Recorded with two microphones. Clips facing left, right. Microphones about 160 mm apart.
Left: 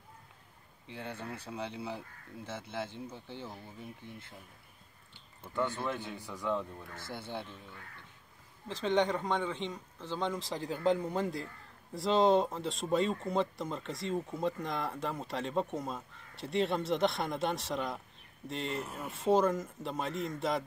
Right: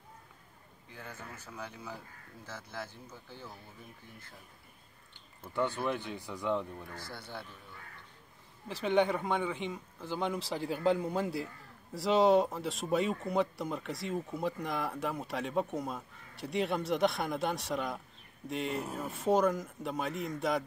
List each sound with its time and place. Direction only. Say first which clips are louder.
0.8 s speech: left 6 dB; 30° left (ahead or behind)
5.4 s speech: right 1 dB; 15° right (ahead or behind)
7.1 s speech: left 4 dB; 20° left (ahead or behind)
8.6 s speech: right 1 dB; 10° right (ahead or behind)
10.4 s speech: right 2 dB; 20° left (ahead or behind)
11.0 s speech: right 1 dB; 10° right (ahead or behind)